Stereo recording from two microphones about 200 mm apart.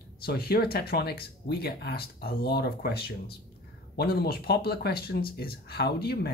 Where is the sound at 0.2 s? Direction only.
50° left (ahead or behind).